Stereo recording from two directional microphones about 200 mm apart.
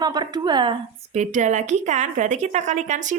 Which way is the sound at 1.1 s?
35° right (ahead or behind).